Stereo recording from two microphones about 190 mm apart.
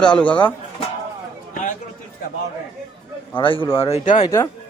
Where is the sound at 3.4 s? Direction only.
25° left (ahead or behind).